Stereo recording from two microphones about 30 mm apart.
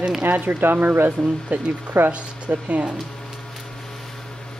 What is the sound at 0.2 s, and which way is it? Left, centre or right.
Speech, right.